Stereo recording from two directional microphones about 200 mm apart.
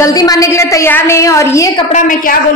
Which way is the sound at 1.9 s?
40° left (ahead or behind).